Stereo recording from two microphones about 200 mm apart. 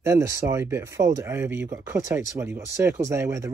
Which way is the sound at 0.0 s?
15° right (ahead or behind).